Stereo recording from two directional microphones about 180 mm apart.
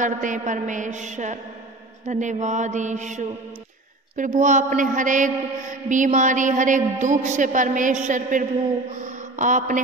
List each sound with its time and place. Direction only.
0.0 s a man's voice: 45° right (ahead or behind)
2.0 s mantra: 40° right (ahead or behind)
4.2 s a man's voice: 45° right (ahead or behind)